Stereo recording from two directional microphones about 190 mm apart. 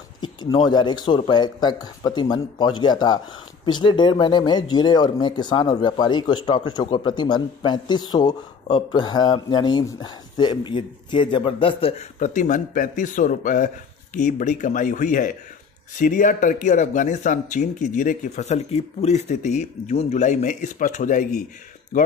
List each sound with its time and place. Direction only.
0.4 s speech: 25° left (ahead or behind); by 21.3 s 45° left (ahead or behind)